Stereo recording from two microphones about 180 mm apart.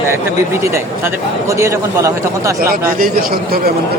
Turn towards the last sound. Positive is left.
turn(degrees=-55)  # may be behind; listen again after turning